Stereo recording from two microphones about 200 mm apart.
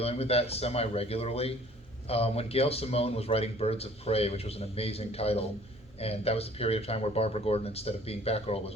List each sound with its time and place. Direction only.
0.0 s speech: 30° left (ahead or behind)